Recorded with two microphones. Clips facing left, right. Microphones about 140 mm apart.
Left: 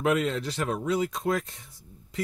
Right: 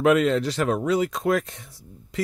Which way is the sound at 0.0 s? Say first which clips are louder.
Right 7 dB; 90° right.